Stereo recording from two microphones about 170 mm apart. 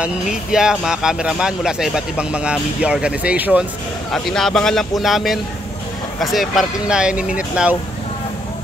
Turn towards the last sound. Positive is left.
turn(degrees=-5)  # may be behind; listen again after turning